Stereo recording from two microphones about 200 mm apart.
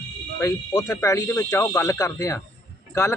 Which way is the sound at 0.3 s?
15° left (ahead or behind).